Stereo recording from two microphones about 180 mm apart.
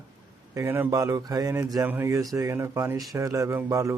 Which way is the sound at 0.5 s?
15° right (ahead or behind).